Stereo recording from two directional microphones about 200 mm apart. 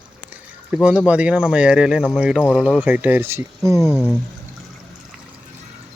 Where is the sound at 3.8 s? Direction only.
10° left (ahead or behind).